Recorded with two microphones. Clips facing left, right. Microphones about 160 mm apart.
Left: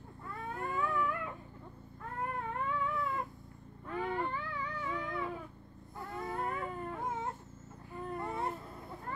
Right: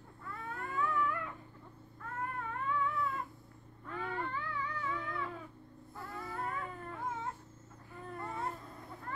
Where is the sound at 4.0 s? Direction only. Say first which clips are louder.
Left 4 dB; 15° left (ahead or behind).